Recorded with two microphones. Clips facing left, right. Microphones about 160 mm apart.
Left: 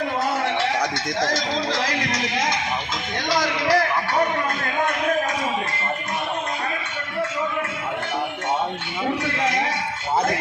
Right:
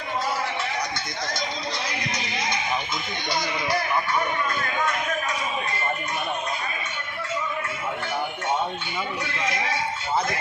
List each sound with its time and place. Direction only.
0.4 s speech: 80° left; by 5.1 s 60° left (ahead or behind)